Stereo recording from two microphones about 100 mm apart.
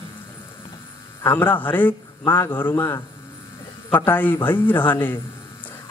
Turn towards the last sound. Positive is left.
turn(degrees=20)  # may be behind; listen again after turning